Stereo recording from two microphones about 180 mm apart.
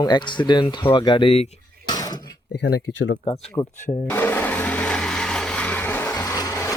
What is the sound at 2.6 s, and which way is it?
Speech, 65° left (ahead or behind).